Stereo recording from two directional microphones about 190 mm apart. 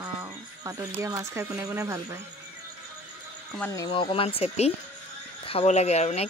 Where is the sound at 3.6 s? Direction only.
15° left (ahead or behind).